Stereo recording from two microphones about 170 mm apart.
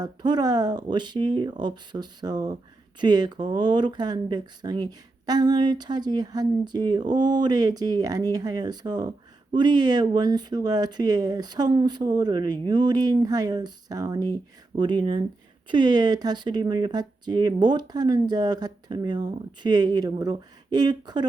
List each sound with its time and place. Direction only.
0.0 s speech: 25° right (ahead or behind)